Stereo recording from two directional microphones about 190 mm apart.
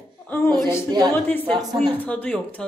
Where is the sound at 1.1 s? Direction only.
10° left (ahead or behind).